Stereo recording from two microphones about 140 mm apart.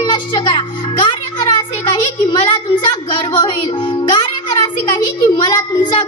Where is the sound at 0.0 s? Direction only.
35° left (ahead or behind).